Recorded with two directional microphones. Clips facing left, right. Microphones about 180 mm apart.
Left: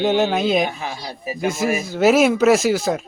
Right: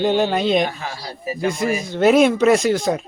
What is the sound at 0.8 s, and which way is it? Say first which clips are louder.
Speech: left 1 dB; 15° left (ahead or behind).